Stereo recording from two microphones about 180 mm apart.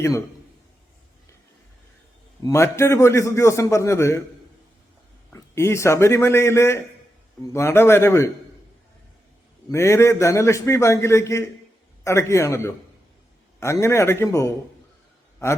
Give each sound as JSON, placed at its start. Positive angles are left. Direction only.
{"t": 2.4, "sound": "a man's voice", "side_deg": 15}
{"t": 5.3, "sound": "a man's voice", "side_deg": 15}
{"t": 9.7, "sound": "a man's voice", "side_deg": 15}